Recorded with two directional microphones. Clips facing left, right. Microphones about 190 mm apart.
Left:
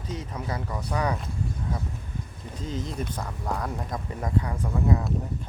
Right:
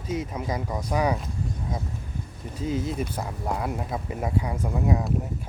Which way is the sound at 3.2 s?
15° right (ahead or behind).